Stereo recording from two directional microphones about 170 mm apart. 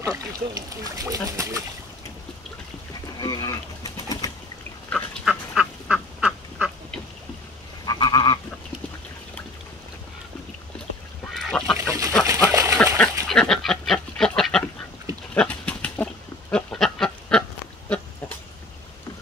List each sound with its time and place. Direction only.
0.0 s speech: 20° right (ahead or behind)
3.2 s bird: 25° left (ahead or behind)
4.8 s duck: centre (ahead or behind)
7.8 s goat: 25° left (ahead or behind)
11.5 s goose: 5° left (ahead or behind)
12.3 s a sound: 15° right (ahead or behind)
12.7 s goat: 5° left (ahead or behind)